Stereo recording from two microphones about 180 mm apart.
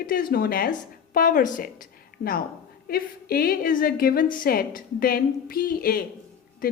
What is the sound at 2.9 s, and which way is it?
A woman's voice, 55° left (ahead or behind).